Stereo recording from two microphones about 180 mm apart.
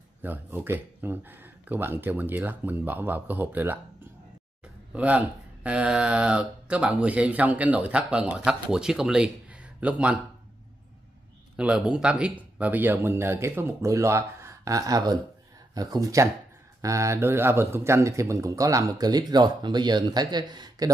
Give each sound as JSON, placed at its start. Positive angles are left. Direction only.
{"t": 0.2, "sound": "speech", "side_deg": -10}
{"t": 11.5, "sound": "a man's voice", "side_deg": -5}